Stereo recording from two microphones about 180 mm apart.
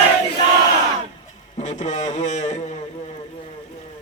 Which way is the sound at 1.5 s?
40° left (ahead or behind).